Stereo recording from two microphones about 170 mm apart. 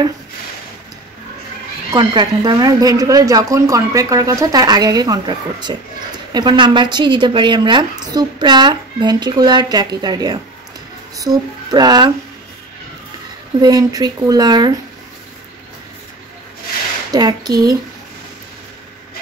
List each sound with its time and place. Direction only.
1.9 s a woman's voice: 25° right (ahead or behind)
13.6 s a woman's voice: 20° right (ahead or behind)
17.1 s a woman's voice: 25° right (ahead or behind)